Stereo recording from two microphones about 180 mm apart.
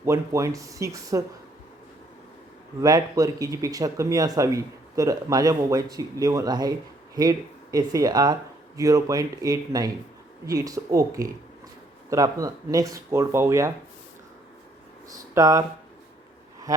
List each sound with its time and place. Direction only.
0.0 s speech: 15° right (ahead or behind)
2.8 s speech: 20° right (ahead or behind)
15.1 s speech: 20° right (ahead or behind)